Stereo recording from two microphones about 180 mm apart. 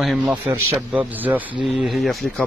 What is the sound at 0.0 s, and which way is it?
Speech, centre (ahead or behind).